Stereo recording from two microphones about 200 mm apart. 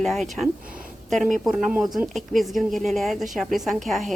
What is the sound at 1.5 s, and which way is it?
Speech, 5° right (ahead or behind).